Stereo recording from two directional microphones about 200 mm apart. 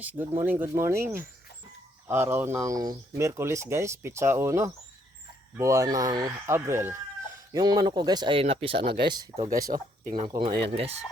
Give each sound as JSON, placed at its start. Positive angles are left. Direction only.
{"t": 0.0, "sound": "speech", "side_deg": -10}
{"t": 8.8, "sound": "speech", "side_deg": -55}
{"t": 9.0, "sound": "speech", "side_deg": -25}
{"t": 9.5, "sound": "speech", "side_deg": -45}
{"t": 10.2, "sound": "speech", "side_deg": -20}